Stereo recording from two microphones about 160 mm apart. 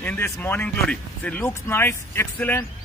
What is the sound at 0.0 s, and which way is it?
Speech, 10° left (ahead or behind).